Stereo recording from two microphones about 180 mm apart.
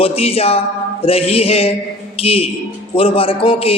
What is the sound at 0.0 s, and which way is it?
A man's voice, 35° left (ahead or behind).